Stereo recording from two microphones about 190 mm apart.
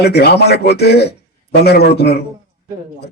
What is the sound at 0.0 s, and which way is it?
A man's voice, 60° left (ahead or behind).